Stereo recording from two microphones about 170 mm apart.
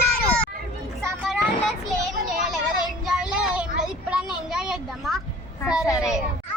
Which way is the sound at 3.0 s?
5° right (ahead or behind).